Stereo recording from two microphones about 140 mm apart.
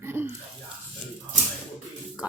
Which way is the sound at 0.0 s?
15° right (ahead or behind).